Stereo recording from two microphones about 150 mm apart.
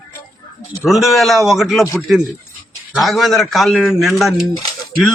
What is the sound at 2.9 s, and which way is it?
A man's voice, centre (ahead or behind).